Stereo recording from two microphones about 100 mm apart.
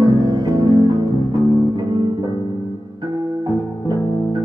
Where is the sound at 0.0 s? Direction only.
50° right (ahead or behind).